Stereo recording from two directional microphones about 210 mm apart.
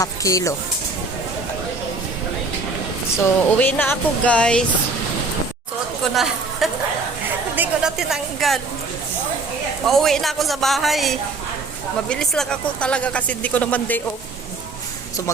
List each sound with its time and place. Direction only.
0.0 s speech: 15° left (ahead or behind)
3.2 s speech: 10° left (ahead or behind)
6.0 s chatter: centre (ahead or behind)
7.5 s a woman's voice: 5° right (ahead or behind)
9.8 s speech: centre (ahead or behind)